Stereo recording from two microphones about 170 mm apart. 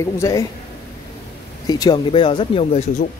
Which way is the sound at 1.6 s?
25° left (ahead or behind).